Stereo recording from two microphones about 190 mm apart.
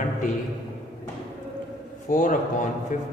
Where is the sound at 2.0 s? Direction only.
45° left (ahead or behind).